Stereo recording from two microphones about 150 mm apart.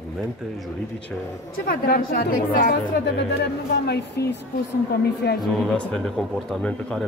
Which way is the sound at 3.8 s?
90° left.